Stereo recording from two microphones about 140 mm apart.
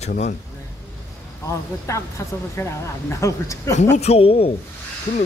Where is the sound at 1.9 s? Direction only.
20° left (ahead or behind).